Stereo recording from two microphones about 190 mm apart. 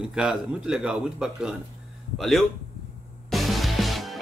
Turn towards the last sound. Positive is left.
turn(degrees=0)  # may be behind; listen again after turning